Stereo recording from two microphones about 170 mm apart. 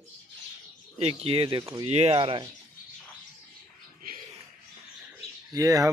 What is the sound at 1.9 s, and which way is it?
Speech, 40° right (ahead or behind).